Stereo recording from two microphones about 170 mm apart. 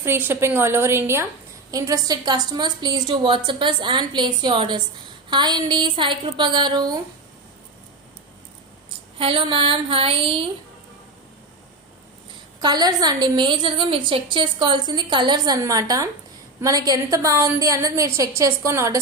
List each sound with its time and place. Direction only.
0.0 s a woman's voice: 10° right (ahead or behind)
9.1 s speech: 35° right (ahead or behind)
12.5 s a woman's voice: 25° right (ahead or behind)